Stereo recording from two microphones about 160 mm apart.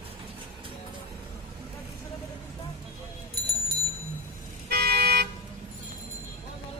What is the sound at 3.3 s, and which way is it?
Bell, 75° right (ahead or behind).